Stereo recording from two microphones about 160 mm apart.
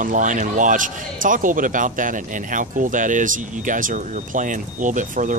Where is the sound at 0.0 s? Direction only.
50° right (ahead or behind).